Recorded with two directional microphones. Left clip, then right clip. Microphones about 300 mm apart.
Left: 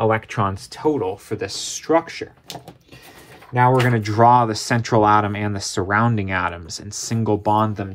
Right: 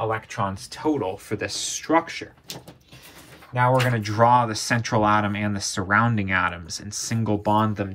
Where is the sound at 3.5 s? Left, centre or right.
Left.